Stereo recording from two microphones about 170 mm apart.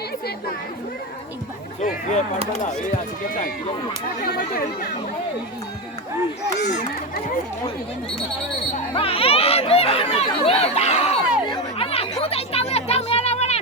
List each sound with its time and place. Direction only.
1.8 s speech: 45° left (ahead or behind)
4.2 s speech: 60° left (ahead or behind)
9.0 s speech: 35° left (ahead or behind)
12.2 s a sound: 35° left (ahead or behind)